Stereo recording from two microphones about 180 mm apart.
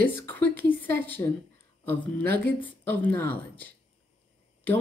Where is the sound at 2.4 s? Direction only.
10° left (ahead or behind).